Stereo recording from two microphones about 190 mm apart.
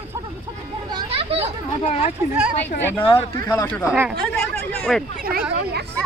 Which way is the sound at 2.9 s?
10° left (ahead or behind).